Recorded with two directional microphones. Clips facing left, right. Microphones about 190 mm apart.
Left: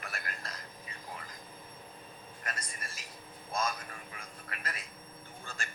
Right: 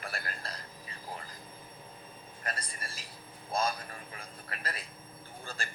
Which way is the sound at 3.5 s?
30° right (ahead or behind).